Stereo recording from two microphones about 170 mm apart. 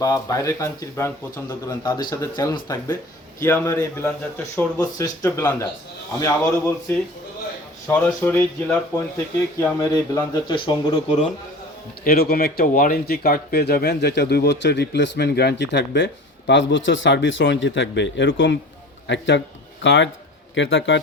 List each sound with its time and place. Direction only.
0.0 s speech: 20° left (ahead or behind)
7.9 s speech: 10° left (ahead or behind); by 10.9 s 25° left (ahead or behind)
12.0 s speech: 60° left (ahead or behind); by 21.0 s 90° left